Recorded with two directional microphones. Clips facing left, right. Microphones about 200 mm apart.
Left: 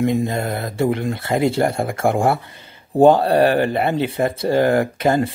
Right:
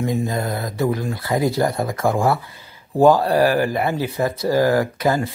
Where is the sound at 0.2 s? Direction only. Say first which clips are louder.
Left 1 dB; 25° left (ahead or behind).